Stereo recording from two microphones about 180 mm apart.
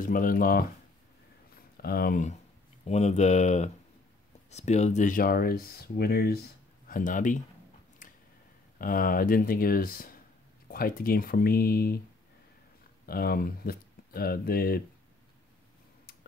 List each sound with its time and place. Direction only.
0.0 s speech: 50° left (ahead or behind)
1.8 s speech: 55° left (ahead or behind)
2.9 s speech: 40° left (ahead or behind); by 6.4 s 60° left (ahead or behind)
6.9 s speech: 45° left (ahead or behind)
8.0 s a sound: 45° left (ahead or behind)
8.7 s speech: 50° left (ahead or behind)
13.0 s speech: 55° left (ahead or behind)